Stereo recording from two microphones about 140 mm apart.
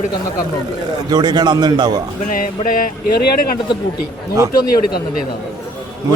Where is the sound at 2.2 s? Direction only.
75° left (ahead or behind).